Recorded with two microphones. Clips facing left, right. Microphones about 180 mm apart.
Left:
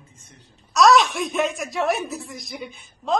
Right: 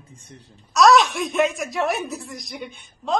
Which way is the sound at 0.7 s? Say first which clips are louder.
Right 1 dB; centre (ahead or behind).